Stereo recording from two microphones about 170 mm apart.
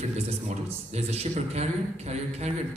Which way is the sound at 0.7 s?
40° right (ahead or behind).